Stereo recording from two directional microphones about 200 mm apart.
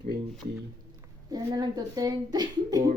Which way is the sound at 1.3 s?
20° right (ahead or behind).